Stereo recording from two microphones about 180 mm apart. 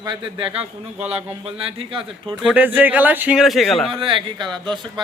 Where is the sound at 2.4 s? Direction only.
10° right (ahead or behind).